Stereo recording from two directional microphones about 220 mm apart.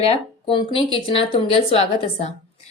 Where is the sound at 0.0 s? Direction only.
25° left (ahead or behind).